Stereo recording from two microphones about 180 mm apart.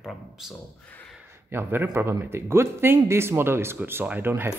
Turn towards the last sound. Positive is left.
turn(degrees=-10)  # may be behind; listen again after turning